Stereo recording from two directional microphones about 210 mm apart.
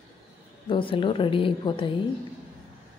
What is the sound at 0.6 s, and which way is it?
A woman's voice, 25° left (ahead or behind).